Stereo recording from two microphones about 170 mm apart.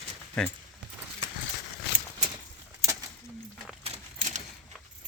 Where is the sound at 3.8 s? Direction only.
40° right (ahead or behind).